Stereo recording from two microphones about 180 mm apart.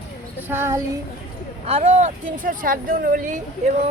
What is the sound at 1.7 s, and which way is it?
Speech, 40° right (ahead or behind).